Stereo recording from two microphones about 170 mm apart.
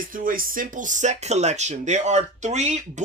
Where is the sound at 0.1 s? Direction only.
55° right (ahead or behind).